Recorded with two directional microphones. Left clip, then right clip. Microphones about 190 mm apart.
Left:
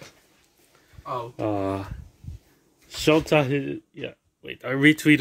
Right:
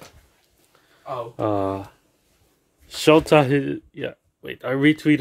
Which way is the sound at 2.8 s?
20° right (ahead or behind).